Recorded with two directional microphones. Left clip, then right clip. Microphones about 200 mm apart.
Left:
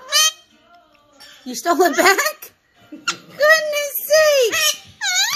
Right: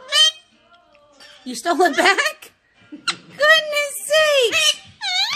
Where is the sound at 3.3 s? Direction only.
20° right (ahead or behind).